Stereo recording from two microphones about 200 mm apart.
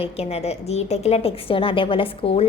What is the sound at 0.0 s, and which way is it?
A woman's voice, 30° left (ahead or behind).